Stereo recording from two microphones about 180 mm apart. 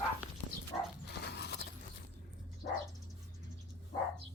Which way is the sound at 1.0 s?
65° left (ahead or behind).